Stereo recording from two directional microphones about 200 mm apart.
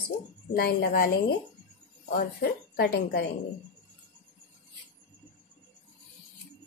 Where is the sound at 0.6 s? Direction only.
50° left (ahead or behind).